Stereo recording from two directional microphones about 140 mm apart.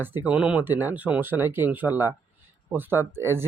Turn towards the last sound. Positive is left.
turn(degrees=-15)  # may be behind; listen again after turning